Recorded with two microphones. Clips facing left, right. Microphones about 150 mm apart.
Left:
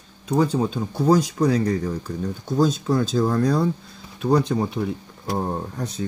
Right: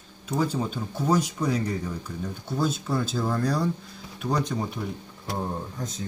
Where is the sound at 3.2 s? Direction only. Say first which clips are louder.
Left 6 dB; 50° left (ahead or behind).